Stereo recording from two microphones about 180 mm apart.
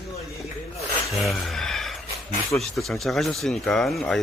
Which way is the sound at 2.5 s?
Centre (ahead or behind).